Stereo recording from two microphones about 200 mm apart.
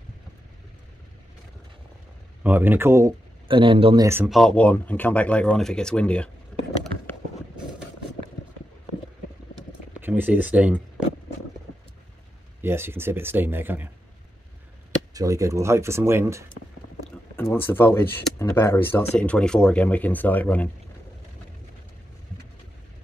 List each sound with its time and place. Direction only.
2.4 s speech: 10° right (ahead or behind)
3.4 s speech: 25° right (ahead or behind)
4.3 s speech: 5° left (ahead or behind)
9.9 s speech: 10° right (ahead or behind)
12.6 s speech: 10° right (ahead or behind)
15.1 s speech: 15° right (ahead or behind)
17.4 s speech: 10° left (ahead or behind)